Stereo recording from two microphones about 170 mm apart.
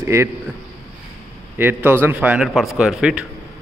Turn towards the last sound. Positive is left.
turn(degrees=-5)  # may be behind; listen again after turning